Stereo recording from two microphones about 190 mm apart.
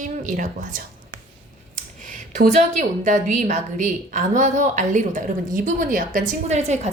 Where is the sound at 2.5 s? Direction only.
40° right (ahead or behind).